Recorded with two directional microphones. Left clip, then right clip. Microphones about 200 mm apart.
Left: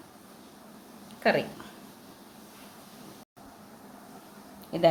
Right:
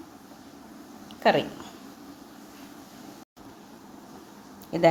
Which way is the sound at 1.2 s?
15° right (ahead or behind).